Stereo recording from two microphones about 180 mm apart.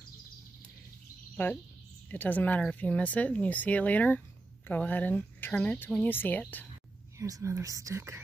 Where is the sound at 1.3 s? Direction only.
10° left (ahead or behind).